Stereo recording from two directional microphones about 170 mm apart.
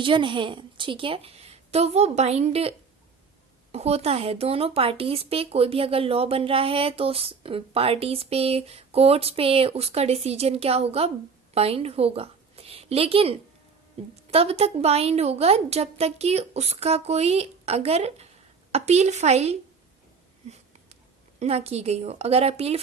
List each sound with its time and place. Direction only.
0.0 s a woman's voice: 30° right (ahead or behind)